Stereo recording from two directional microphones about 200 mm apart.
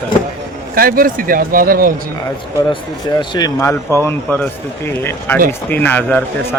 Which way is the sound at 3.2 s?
20° left (ahead or behind).